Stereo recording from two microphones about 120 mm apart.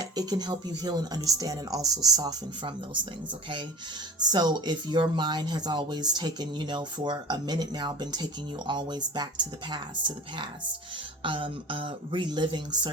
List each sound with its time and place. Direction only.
0.0 s speech: 35° right (ahead or behind)
4.2 s speech: 35° right (ahead or behind)